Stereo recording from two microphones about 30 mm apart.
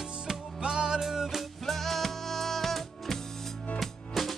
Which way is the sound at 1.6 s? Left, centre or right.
Centre.